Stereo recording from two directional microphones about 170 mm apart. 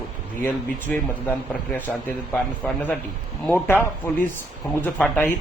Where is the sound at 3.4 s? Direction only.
10° left (ahead or behind).